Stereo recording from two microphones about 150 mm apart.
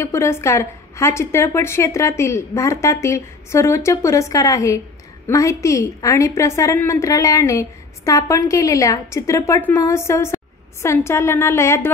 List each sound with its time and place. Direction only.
0.0 s a woman's voice: 20° left (ahead or behind)